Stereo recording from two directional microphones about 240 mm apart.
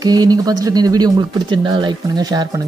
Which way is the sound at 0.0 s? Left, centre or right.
Centre.